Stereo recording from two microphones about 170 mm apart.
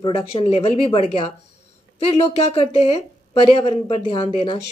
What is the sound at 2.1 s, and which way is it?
A woman's voice, 35° left (ahead or behind).